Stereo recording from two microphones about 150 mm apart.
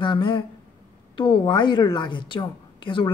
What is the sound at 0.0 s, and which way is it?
A woman's voice, 35° left (ahead or behind).